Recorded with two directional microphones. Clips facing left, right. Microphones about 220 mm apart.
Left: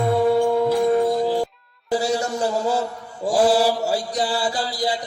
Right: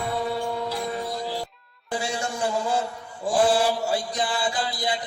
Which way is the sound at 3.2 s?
40° left (ahead or behind).